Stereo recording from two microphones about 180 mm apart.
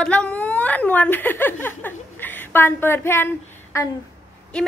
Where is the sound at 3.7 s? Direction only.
15° left (ahead or behind).